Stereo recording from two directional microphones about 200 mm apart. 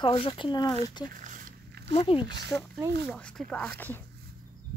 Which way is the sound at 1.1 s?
40° right (ahead or behind).